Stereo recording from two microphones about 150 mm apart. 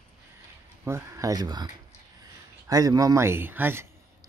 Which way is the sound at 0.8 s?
20° right (ahead or behind).